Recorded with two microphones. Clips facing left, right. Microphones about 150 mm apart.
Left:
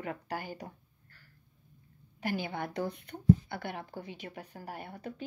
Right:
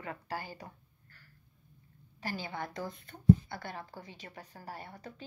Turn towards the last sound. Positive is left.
turn(degrees=60)  # may be behind; listen again after turning